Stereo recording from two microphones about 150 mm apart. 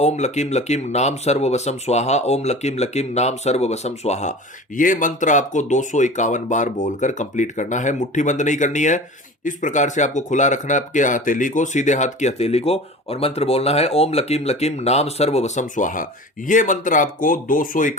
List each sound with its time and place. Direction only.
0.0 s speech: 50° left (ahead or behind)
4.8 s speech: 60° left (ahead or behind)